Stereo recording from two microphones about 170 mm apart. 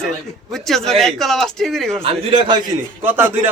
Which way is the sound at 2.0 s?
35° right (ahead or behind).